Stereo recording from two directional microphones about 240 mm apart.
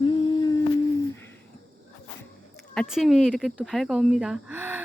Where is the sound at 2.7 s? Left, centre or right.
Centre.